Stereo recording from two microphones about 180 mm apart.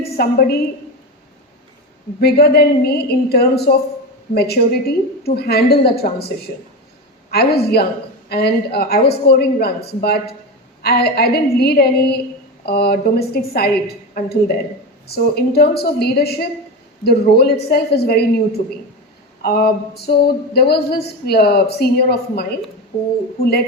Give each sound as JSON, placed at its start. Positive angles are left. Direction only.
{"t": 0.2, "sound": "speech", "side_deg": 60}
{"t": 2.2, "sound": "speech", "side_deg": 60}
{"t": 19.4, "sound": "speech", "side_deg": 60}